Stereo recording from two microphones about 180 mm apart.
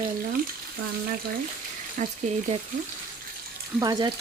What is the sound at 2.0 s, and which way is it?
Speech, 45° right (ahead or behind).